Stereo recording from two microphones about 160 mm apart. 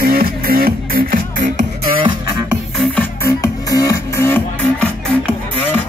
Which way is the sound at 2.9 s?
15° left (ahead or behind).